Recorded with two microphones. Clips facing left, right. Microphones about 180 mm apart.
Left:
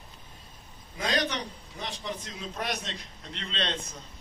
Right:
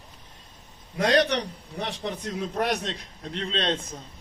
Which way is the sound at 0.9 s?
65° right (ahead or behind).